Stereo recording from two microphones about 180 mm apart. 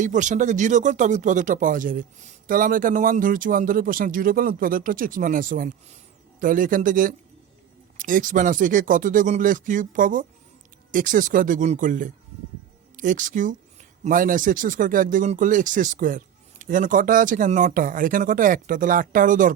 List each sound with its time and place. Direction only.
0.0 s speech: 45° right (ahead or behind)